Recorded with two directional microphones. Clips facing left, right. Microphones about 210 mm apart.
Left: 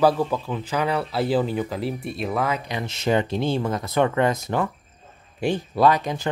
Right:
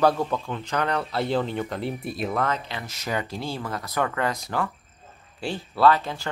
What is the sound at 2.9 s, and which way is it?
Speech, 25° left (ahead or behind).